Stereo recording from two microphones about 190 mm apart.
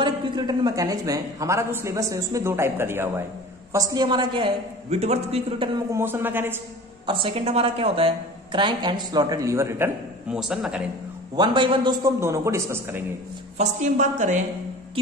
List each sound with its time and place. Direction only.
0.0 s a man's voice: 20° right (ahead or behind)
5.9 s a man's voice: 15° right (ahead or behind)
7.1 s a woman's voice: 25° right (ahead or behind)
10.3 s speech: centre (ahead or behind)
11.3 s a man's voice: 25° right (ahead or behind)
13.6 s a woman's voice: 40° right (ahead or behind)